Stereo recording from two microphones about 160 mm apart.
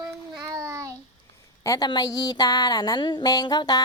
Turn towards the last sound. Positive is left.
turn(degrees=25)  # may be behind; listen again after turning